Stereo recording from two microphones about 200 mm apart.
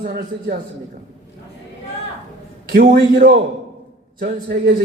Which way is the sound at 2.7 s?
50° right (ahead or behind).